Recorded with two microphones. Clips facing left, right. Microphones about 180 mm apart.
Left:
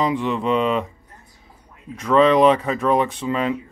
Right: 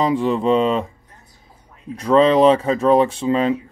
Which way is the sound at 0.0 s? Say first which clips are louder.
Right 3 dB; 35° right (ahead or behind).